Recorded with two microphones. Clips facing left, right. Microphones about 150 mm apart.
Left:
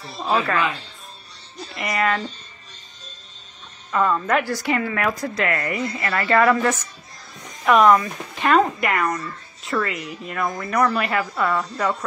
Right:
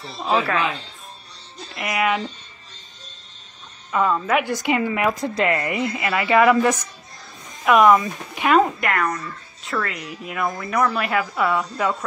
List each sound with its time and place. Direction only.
0.2 s speech: centre (ahead or behind)
1.8 s a woman's voice: 5° right (ahead or behind)
3.9 s a woman's voice: 5° right (ahead or behind)
4.5 s a woman's voice: 20° right (ahead or behind)
7.6 s speech: centre (ahead or behind)